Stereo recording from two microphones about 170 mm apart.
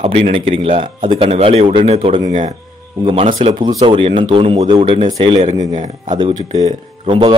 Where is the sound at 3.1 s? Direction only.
30° right (ahead or behind).